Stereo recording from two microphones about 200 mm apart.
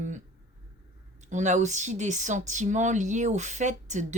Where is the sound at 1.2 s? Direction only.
35° right (ahead or behind).